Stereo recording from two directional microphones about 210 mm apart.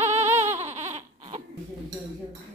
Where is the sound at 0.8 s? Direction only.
35° right (ahead or behind).